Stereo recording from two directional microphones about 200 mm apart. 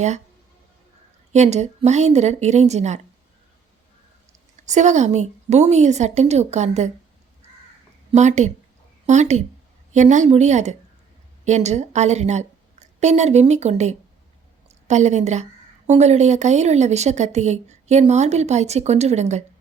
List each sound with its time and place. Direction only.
1.3 s speech: 35° right (ahead or behind)
4.7 s speech: 35° right (ahead or behind)
8.1 s a woman's voice: 35° right (ahead or behind)